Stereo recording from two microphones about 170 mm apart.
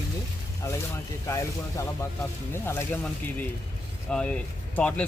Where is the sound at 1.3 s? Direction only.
15° left (ahead or behind).